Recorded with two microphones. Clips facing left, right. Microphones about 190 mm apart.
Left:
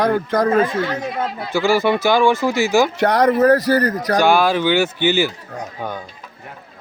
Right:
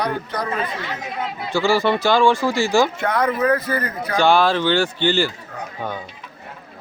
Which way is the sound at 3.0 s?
40° left (ahead or behind).